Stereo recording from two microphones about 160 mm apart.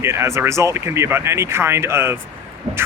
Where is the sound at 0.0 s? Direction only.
15° right (ahead or behind).